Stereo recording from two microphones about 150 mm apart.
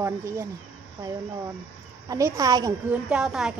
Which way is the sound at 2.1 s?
20° right (ahead or behind).